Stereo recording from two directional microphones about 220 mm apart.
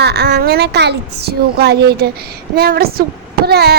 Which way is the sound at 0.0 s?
45° right (ahead or behind).